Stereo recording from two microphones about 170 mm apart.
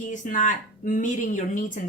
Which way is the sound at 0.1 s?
50° left (ahead or behind).